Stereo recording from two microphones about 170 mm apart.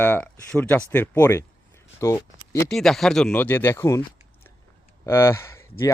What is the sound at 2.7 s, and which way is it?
Speech, centre (ahead or behind).